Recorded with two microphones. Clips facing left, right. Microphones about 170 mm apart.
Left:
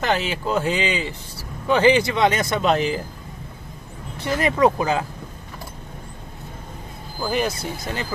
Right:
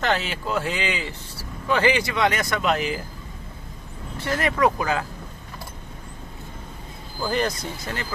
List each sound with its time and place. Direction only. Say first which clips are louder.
0.0 s speech: left 2 dB; 15° left (ahead or behind)
4.2 s speech: left 3 dB; 20° left (ahead or behind)
7.2 s speech: left 1 dB; 10° left (ahead or behind)